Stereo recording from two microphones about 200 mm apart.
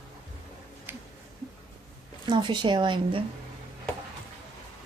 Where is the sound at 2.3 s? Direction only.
25° right (ahead or behind).